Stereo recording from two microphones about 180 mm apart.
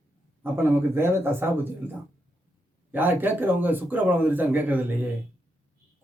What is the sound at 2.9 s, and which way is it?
A man's voice, 10° right (ahead or behind).